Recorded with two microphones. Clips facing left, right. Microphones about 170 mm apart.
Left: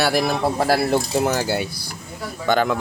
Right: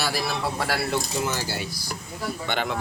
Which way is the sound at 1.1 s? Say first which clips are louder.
Left 8 dB; 55° left (ahead or behind).